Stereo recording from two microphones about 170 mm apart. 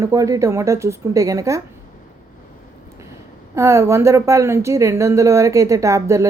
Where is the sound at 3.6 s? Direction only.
15° right (ahead or behind).